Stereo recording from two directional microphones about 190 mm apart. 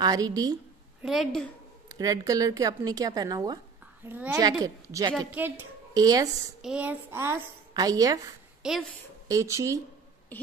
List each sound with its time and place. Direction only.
0.0 s a woman's voice: 20° right (ahead or behind)
1.0 s a woman's voice: centre (ahead or behind)
1.9 s a woman's voice: 20° right (ahead or behind)
4.0 s a woman's voice: 10° right (ahead or behind)
6.6 s a woman's voice: 5° right (ahead or behind)
8.6 s a woman's voice: 5° right (ahead or behind)
9.3 s a woman's voice: 15° right (ahead or behind)